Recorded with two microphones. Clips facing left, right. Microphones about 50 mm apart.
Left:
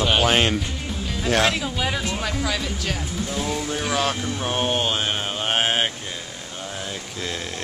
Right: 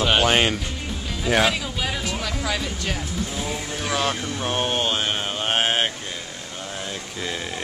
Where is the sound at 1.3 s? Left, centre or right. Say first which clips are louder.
Even; centre.